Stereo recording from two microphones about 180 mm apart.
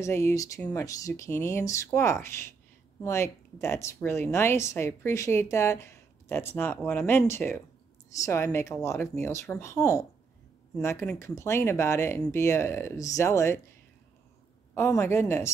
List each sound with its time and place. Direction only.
0.0 s speech: 15° left (ahead or behind)
14.8 s speech: 15° left (ahead or behind)